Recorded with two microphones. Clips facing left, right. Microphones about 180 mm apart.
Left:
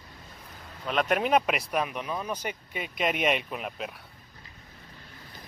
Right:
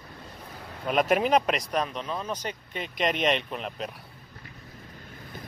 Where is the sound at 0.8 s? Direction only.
5° right (ahead or behind).